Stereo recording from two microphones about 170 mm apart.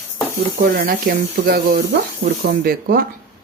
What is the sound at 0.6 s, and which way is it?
Speech, 60° right (ahead or behind).